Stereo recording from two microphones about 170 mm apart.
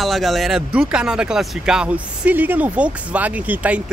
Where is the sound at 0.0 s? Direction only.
Centre (ahead or behind).